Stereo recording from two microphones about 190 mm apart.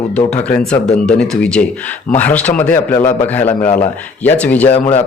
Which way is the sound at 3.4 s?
35° left (ahead or behind).